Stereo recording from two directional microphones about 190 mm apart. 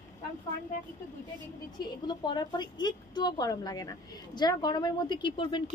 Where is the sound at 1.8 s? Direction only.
20° left (ahead or behind).